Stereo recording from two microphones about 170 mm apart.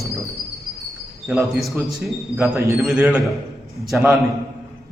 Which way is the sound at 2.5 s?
15° right (ahead or behind).